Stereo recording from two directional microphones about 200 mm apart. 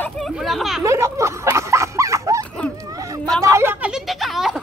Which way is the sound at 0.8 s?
15° right (ahead or behind).